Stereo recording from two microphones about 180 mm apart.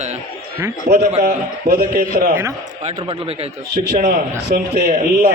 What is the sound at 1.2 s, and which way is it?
A man's voice, 60° right (ahead or behind).